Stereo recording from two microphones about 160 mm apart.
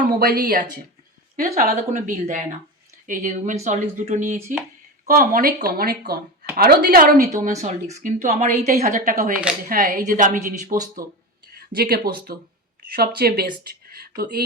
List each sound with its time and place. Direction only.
0.2 s speech: 65° right (ahead or behind)
1.5 s a woman's voice: 55° right (ahead or behind)
5.0 s a woman's voice: 60° right (ahead or behind)
7.3 s a woman's voice: 55° right (ahead or behind)
9.0 s a woman's voice: 65° right (ahead or behind)
11.5 s a woman's voice: 70° right (ahead or behind)